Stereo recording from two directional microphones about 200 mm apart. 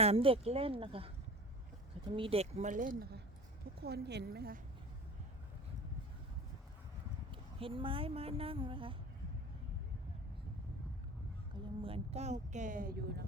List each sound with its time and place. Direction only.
0.0 s speech: 30° right (ahead or behind)
2.1 s a woman's voice: 25° right (ahead or behind); by 4.6 s 50° right (ahead or behind)
7.3 s speech: 25° right (ahead or behind)
11.5 s speech: 25° right (ahead or behind); by 13.2 s 55° right (ahead or behind)